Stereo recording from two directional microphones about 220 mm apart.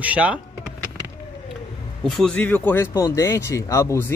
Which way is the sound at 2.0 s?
5° left (ahead or behind).